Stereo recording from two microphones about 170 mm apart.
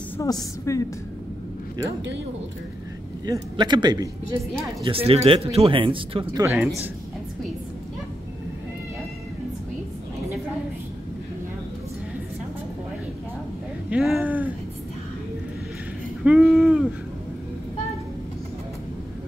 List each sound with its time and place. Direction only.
0.2 s a woman's voice: 20° left (ahead or behind)
3.3 s a man's voice: 25° right (ahead or behind)
4.8 s speech: 35° right (ahead or behind)
6.4 s speech: 10° right (ahead or behind)
13.8 s a sound: 5° right (ahead or behind)
16.3 s a sound: centre (ahead or behind)